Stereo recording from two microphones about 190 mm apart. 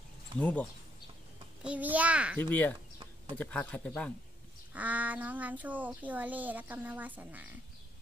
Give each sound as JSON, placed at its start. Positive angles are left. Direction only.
{"t": 0.4, "sound": "speech", "side_deg": 10}
{"t": 1.6, "sound": "speech", "side_deg": -5}
{"t": 2.3, "sound": "speech", "side_deg": 10}
{"t": 4.7, "sound": "speech", "side_deg": -10}